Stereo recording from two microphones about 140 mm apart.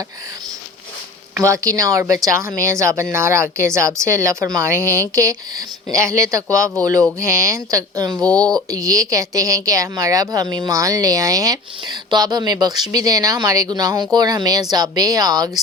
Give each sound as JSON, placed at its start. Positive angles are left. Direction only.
{"t": 1.4, "sound": "a woman's voice", "side_deg": -20}
{"t": 8.3, "sound": "speech", "side_deg": 10}
{"t": 8.5, "sound": "a woman's voice", "side_deg": -25}